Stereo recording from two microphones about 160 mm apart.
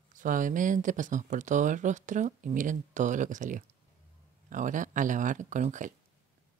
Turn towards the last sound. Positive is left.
turn(degrees=-50)  # may be behind; listen again after turning